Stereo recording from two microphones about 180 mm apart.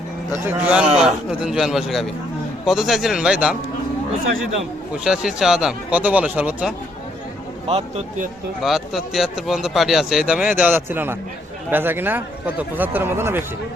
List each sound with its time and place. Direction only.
0.4 s speech: 5° right (ahead or behind)
5.0 s speech: 5° right (ahead or behind)
7.7 s speech: 35° right (ahead or behind)
8.6 s a man's voice: centre (ahead or behind)